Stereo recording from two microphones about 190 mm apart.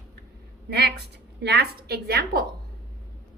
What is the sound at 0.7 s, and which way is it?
A woman's voice, 55° right (ahead or behind).